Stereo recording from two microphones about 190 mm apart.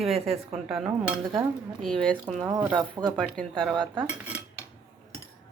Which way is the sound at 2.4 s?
20° right (ahead or behind).